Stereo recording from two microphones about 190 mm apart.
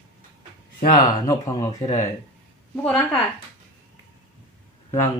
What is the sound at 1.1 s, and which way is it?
Speech, 20° left (ahead or behind).